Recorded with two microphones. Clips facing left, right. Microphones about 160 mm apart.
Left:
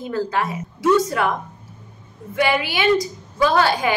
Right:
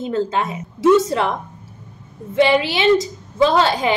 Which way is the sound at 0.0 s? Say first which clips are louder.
Right 2 dB; 25° right (ahead or behind).